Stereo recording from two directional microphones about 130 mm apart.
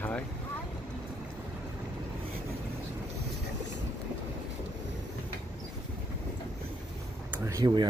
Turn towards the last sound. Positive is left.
turn(degrees=-30)  # may be behind; listen again after turning